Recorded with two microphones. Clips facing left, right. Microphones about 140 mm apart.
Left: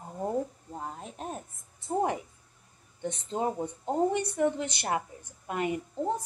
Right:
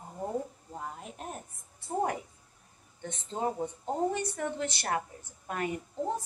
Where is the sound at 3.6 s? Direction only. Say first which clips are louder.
Left 3 dB; 15° left (ahead or behind).